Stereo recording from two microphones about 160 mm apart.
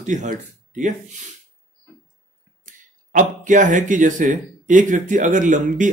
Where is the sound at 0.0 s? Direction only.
50° right (ahead or behind).